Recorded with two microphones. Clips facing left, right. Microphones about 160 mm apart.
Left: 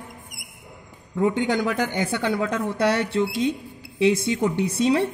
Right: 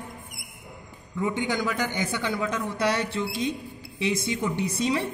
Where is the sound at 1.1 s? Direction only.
65° left (ahead or behind).